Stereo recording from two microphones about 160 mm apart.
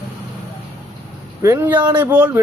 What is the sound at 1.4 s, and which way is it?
Speech, 15° right (ahead or behind).